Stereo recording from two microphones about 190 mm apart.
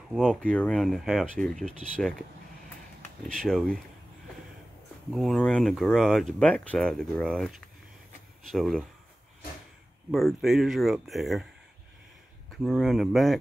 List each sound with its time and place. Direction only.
0.1 s speech: 5° left (ahead or behind)
3.3 s speech: 5° left (ahead or behind)
5.1 s speech: centre (ahead or behind)
10.1 s speech: centre (ahead or behind)
12.4 s speech: centre (ahead or behind)